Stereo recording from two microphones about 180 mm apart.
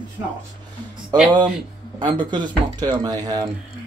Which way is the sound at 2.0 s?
25° right (ahead or behind).